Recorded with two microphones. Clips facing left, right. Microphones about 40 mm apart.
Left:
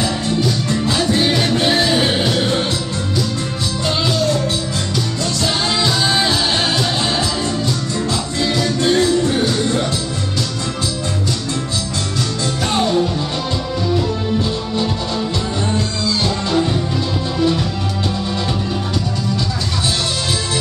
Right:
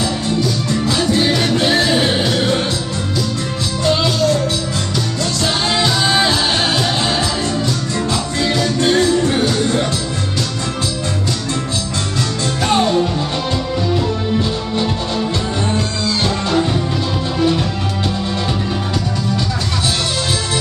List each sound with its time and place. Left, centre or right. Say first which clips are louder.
5.4 s music: right 1 dB; centre
8.9 s music: even; right
9.5 s music: right 1 dB; right
12.6 s music: right 2 dB; centre
16.3 s music: right 2 dB; right